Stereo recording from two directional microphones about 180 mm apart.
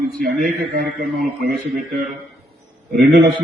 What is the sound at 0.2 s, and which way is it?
Speech, 50° right (ahead or behind).